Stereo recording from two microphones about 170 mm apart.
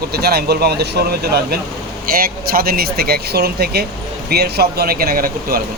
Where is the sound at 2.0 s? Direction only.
60° right (ahead or behind).